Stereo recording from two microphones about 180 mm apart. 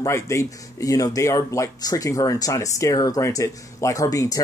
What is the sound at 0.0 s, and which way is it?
Speech, 15° left (ahead or behind).